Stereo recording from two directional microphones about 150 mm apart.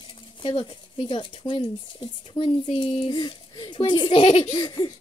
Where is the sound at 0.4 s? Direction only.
40° left (ahead or behind).